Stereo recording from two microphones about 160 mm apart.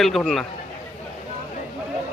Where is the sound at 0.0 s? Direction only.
Centre (ahead or behind).